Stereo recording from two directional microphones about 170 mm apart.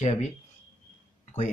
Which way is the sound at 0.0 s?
45° left (ahead or behind).